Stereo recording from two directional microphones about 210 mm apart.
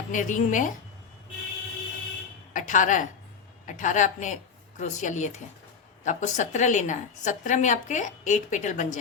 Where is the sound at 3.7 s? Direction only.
35° left (ahead or behind).